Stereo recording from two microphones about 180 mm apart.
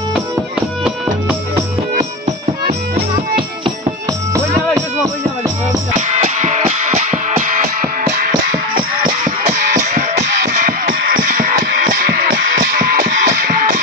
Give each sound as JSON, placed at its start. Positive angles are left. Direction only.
{"t": 5.9, "sound": "music", "side_deg": -40}
{"t": 10.1, "sound": "music", "side_deg": -75}
{"t": 10.5, "sound": "music", "side_deg": -50}